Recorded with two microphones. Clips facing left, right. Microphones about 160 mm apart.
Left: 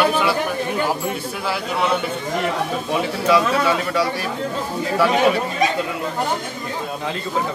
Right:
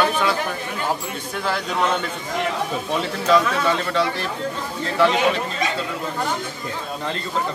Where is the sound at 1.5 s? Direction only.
5° left (ahead or behind).